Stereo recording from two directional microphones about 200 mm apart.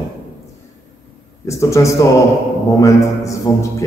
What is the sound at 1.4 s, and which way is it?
A man's voice, 15° left (ahead or behind).